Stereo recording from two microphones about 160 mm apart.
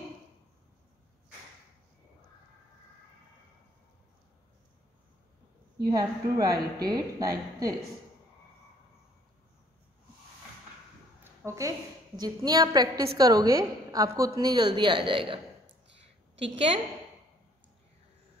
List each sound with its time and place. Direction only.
5.9 s a woman's voice: 25° right (ahead or behind)
11.4 s a woman's voice: 20° right (ahead or behind); by 16.8 s 35° right (ahead or behind)